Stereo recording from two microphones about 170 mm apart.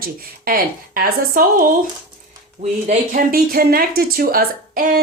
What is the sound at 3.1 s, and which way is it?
Speech, 60° right (ahead or behind).